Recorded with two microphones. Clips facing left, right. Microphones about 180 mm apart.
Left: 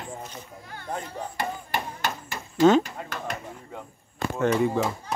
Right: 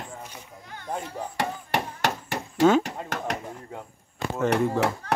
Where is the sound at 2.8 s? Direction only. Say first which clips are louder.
Right 3 dB; 90° right.